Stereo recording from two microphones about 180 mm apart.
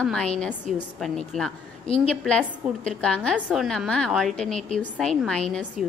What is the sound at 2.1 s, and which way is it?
A woman's voice, 5° left (ahead or behind).